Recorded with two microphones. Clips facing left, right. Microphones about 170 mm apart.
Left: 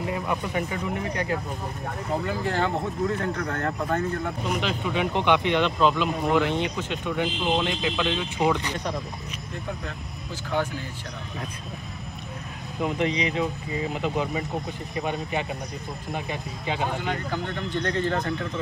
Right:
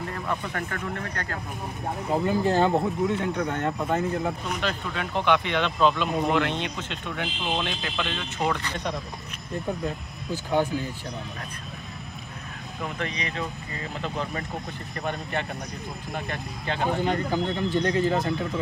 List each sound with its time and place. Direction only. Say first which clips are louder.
0.1 s speech: left 4 dB; 10° left (ahead or behind)
2.2 s speech: right 6 dB; 15° right (ahead or behind)
3.8 s speech: right 1 dB; 5° right (ahead or behind)
4.6 s speech: left 3 dB; 10° left (ahead or behind)
9.8 s speech: right 5 dB; 15° right (ahead or behind)
12.8 s speech: left 7 dB; 20° left (ahead or behind)
17.0 s speech: right 4 dB; 15° right (ahead or behind)